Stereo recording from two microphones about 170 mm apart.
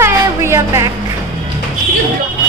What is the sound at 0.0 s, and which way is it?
Music, 15° right (ahead or behind).